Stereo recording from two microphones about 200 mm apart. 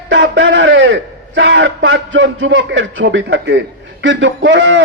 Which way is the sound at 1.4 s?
70° right (ahead or behind).